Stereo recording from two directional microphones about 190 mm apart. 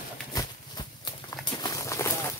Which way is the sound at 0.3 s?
20° left (ahead or behind).